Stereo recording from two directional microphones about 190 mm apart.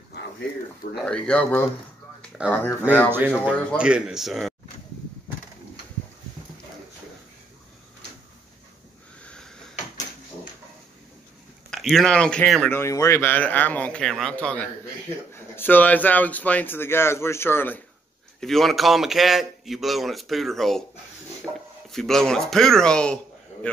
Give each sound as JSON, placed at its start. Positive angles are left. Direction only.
{"t": 0.9, "sound": "a man's voice", "side_deg": 5}
{"t": 2.4, "sound": "a man's voice", "side_deg": -5}
{"t": 9.2, "sound": "a sound", "side_deg": 5}
{"t": 11.7, "sound": "speech", "side_deg": 0}
{"t": 12.7, "sound": "a man's voice", "side_deg": 15}
{"t": 21.5, "sound": "a sound", "side_deg": -20}
{"t": 21.9, "sound": "a man's voice", "side_deg": 0}